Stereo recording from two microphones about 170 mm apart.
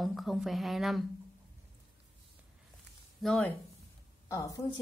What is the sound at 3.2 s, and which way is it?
Speech, 5° left (ahead or behind).